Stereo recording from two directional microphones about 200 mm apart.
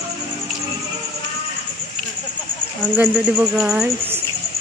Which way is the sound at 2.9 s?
5° right (ahead or behind).